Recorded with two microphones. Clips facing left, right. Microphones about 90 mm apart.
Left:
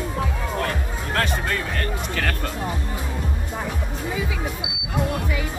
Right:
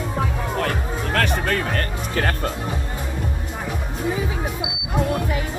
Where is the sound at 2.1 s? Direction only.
35° right (ahead or behind).